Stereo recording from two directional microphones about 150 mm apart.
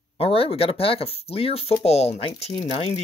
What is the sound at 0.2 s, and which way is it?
Speech, 40° left (ahead or behind).